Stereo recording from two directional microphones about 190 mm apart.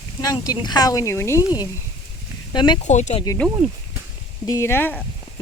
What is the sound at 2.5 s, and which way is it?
Speech, 25° left (ahead or behind).